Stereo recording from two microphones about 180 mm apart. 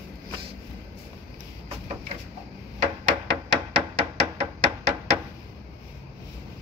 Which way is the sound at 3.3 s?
30° right (ahead or behind).